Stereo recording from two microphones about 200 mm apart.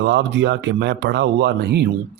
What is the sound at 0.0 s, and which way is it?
Speech, 60° right (ahead or behind).